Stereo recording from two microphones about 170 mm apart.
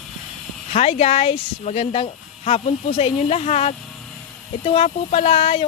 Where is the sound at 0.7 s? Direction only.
40° left (ahead or behind).